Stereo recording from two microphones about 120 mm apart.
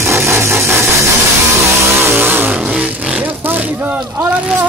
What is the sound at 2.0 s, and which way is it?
Vehicle, 20° right (ahead or behind).